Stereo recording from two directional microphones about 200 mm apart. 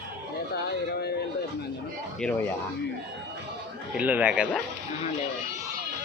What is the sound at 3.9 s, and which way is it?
Speech, 5° right (ahead or behind).